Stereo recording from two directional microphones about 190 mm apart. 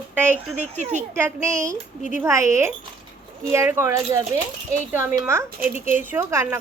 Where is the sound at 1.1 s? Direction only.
15° right (ahead or behind).